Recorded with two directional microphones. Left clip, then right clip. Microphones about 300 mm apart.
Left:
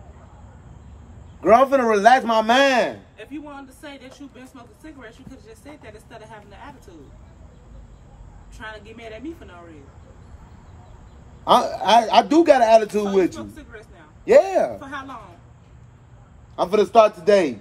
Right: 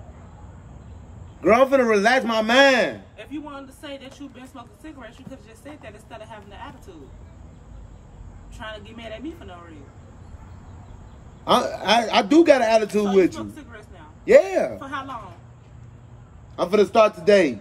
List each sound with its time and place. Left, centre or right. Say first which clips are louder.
1.4 s speech: left 2 dB; centre
3.3 s a woman's voice: right 2 dB; centre
8.5 s a woman's voice: even; centre
11.4 s speech: left 3 dB; centre
14.8 s a woman's voice: right 2 dB; centre
16.5 s speech: left 2 dB; centre